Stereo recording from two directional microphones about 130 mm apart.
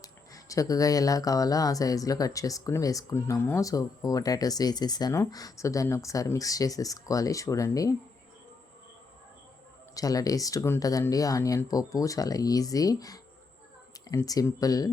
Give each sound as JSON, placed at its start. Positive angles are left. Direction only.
{"t": 0.0, "sound": "speech", "side_deg": 25}
{"t": 9.9, "sound": "speech", "side_deg": 30}